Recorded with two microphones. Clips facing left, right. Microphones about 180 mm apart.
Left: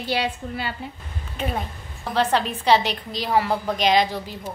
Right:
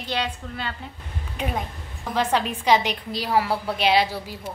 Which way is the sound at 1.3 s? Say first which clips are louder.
Left 1 dB; 10° right (ahead or behind).